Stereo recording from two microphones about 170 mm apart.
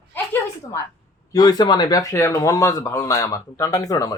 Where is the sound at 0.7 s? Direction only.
20° left (ahead or behind).